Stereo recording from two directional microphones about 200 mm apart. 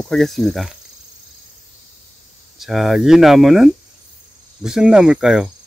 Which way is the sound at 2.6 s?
Centre (ahead or behind).